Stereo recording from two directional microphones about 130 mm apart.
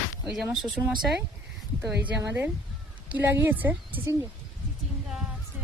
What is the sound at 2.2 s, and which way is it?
A woman's voice, 20° right (ahead or behind).